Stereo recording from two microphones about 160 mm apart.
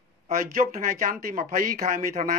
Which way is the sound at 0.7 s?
65° right (ahead or behind).